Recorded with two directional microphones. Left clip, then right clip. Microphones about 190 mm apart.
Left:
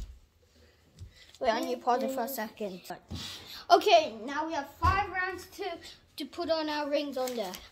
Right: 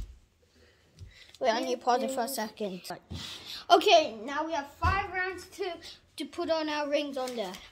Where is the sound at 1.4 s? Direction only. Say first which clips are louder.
Right 1 dB; 35° right (ahead or behind).